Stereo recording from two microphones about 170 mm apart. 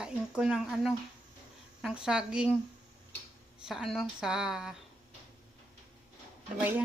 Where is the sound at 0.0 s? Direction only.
5° right (ahead or behind).